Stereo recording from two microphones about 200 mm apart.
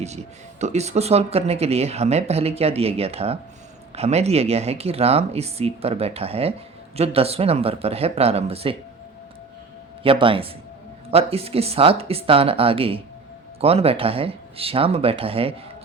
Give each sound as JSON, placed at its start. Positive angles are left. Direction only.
{"t": 0.6, "sound": "speech", "side_deg": -35}
{"t": 10.0, "sound": "speech", "side_deg": -25}